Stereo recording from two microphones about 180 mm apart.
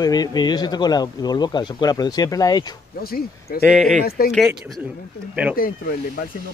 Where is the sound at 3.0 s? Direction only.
55° left (ahead or behind).